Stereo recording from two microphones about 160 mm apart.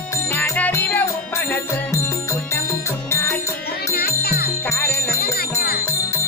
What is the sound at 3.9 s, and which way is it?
Music, 75° left (ahead or behind).